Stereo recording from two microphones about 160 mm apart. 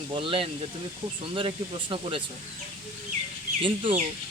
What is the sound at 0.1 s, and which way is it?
Speech, 35° right (ahead or behind).